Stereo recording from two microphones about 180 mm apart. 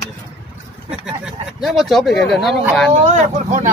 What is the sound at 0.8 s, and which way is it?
Speech, 5° right (ahead or behind).